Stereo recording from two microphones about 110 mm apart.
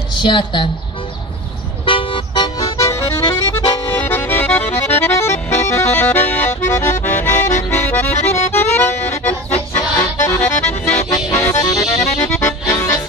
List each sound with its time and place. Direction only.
0.2 s a woman's voice: 45° left (ahead or behind)
1.9 s music: 50° left (ahead or behind)
2.9 s music: 25° left (ahead or behind)
3.9 s accordion: 15° left (ahead or behind)
6.7 s music: 25° left (ahead or behind)
7.7 s accordion: 15° left (ahead or behind)
8.5 s music: 20° left (ahead or behind)
10.1 s accordion: 20° left (ahead or behind)
11.1 s accordion: 30° left (ahead or behind)
12.2 s accordion: 20° left (ahead or behind)